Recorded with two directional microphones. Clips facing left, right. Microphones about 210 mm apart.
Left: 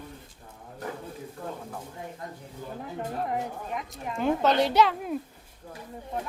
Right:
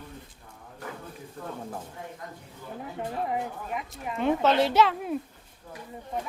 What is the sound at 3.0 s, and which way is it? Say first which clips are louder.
A child's voice: right 1 dB; 5° right (ahead or behind).